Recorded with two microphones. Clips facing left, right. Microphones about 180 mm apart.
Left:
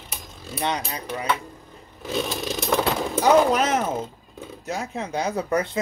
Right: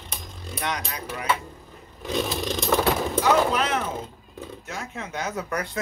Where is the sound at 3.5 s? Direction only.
45° left (ahead or behind).